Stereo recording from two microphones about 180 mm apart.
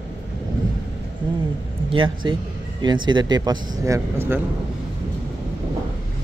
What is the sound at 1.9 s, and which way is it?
A man's voice, 25° right (ahead or behind).